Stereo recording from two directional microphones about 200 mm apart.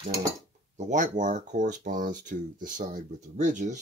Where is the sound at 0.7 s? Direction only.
35° right (ahead or behind).